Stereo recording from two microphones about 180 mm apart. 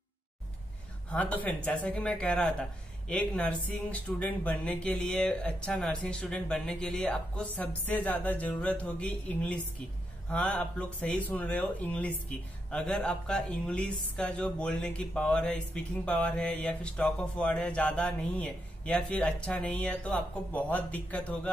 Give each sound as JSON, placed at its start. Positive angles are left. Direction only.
{"t": 1.1, "sound": "speech", "side_deg": 10}